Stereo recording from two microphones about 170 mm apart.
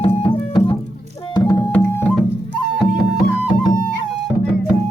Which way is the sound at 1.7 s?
10° left (ahead or behind).